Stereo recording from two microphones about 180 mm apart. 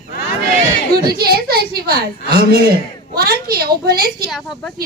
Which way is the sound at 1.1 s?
60° right (ahead or behind).